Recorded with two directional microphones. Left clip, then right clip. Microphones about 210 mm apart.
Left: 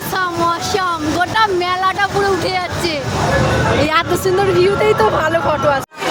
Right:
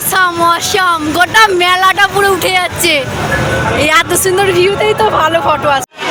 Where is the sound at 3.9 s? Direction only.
5° left (ahead or behind).